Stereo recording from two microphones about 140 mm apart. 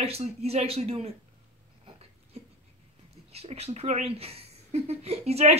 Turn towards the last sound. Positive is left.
turn(degrees=-50)  # may be behind; listen again after turning